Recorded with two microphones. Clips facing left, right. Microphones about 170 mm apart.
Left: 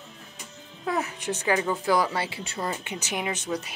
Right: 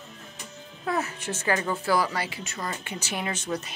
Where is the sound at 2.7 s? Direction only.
20° left (ahead or behind).